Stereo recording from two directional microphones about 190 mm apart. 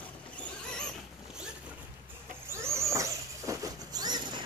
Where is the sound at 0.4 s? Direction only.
5° left (ahead or behind).